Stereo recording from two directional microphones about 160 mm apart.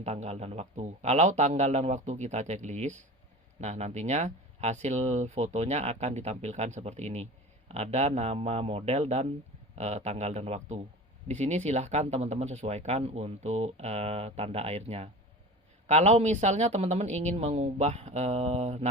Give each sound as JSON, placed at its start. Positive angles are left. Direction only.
{"t": 0.0, "sound": "speech", "side_deg": -40}